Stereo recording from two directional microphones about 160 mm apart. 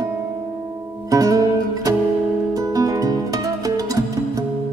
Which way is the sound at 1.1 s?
20° right (ahead or behind).